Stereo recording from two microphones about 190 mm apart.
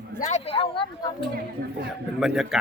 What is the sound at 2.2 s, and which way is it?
Speech, 5° right (ahead or behind).